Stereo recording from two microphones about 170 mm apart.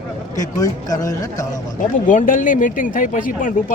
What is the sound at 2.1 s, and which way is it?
Speech, 50° left (ahead or behind).